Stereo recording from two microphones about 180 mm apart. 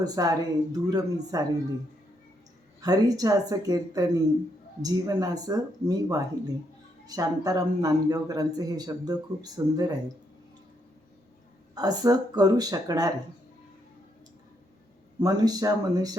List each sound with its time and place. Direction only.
0.0 s a man's voice: 20° right (ahead or behind)
2.8 s a man's voice: 20° right (ahead or behind)
11.7 s a man's voice: 20° right (ahead or behind)
15.2 s a man's voice: 20° right (ahead or behind)